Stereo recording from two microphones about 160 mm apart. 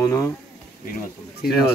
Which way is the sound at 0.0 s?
15° left (ahead or behind).